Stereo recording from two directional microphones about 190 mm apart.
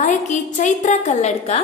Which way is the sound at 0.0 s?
40° left (ahead or behind).